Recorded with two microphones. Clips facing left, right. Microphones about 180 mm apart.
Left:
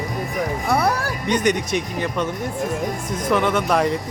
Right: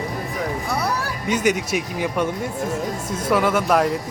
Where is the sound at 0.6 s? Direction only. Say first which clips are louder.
Left 9 dB; 55° left (ahead or behind).